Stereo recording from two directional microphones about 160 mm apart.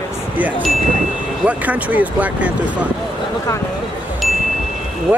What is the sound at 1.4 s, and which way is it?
Speech, 10° right (ahead or behind).